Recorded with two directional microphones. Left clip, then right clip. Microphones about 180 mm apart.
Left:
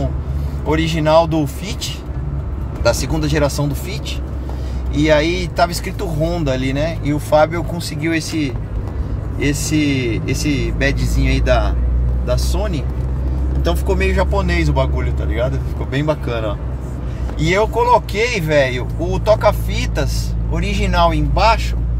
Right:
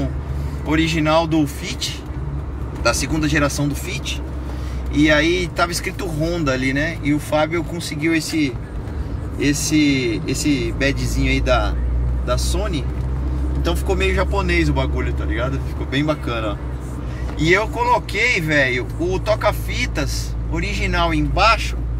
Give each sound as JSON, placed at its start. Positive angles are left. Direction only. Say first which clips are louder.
{"t": 0.7, "sound": "speech", "louder": "left 2 dB", "side_deg": 20}